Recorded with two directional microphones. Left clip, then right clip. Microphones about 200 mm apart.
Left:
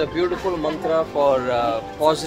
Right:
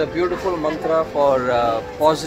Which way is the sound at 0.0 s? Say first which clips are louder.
Right 1 dB; 10° right (ahead or behind).